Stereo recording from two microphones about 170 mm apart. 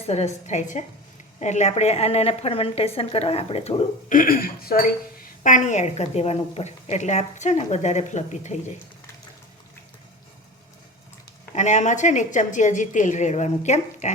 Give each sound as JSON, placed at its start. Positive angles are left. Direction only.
{"t": 0.1, "sound": "a woman's voice", "side_deg": 40}
{"t": 4.1, "sound": "speech", "side_deg": 55}
{"t": 5.4, "sound": "a woman's voice", "side_deg": 45}
{"t": 11.5, "sound": "a woman's voice", "side_deg": 45}